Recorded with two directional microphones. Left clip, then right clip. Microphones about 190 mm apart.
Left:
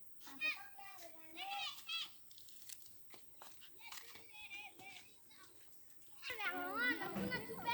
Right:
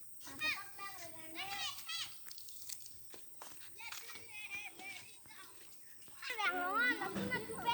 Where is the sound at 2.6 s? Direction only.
30° left (ahead or behind).